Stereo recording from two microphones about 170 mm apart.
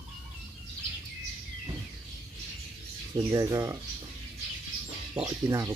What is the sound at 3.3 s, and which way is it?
Speech, 20° right (ahead or behind).